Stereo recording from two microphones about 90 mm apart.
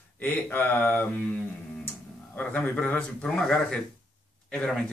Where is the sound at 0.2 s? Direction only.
20° left (ahead or behind).